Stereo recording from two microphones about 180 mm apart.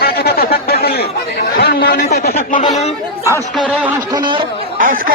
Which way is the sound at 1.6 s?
60° left (ahead or behind).